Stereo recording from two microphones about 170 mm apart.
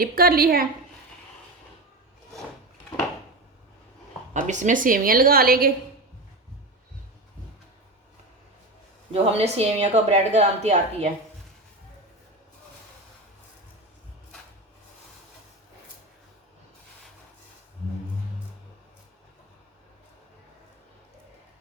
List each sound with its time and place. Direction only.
0.0 s a woman's voice: 60° right (ahead or behind)
4.4 s a woman's voice: 45° right (ahead or behind)
9.4 s a woman's voice: 40° right (ahead or behind)